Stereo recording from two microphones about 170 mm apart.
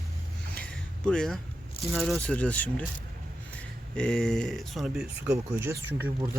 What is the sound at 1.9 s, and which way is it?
Speech, centre (ahead or behind).